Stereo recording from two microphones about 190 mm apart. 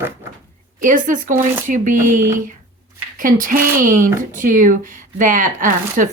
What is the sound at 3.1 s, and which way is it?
Speech, 45° right (ahead or behind).